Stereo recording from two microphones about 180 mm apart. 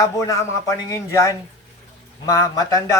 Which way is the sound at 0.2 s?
20° left (ahead or behind).